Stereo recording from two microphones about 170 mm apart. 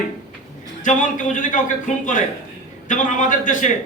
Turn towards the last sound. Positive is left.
turn(degrees=50)  # may be behind; listen again after turning